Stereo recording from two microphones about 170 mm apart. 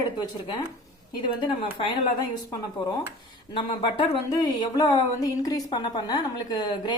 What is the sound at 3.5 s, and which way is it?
Speech, 30° left (ahead or behind).